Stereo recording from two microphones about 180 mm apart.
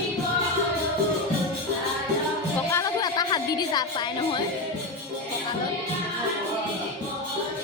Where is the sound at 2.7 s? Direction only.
20° left (ahead or behind).